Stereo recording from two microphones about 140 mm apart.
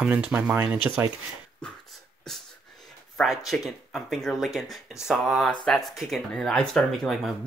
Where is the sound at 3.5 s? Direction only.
Centre (ahead or behind).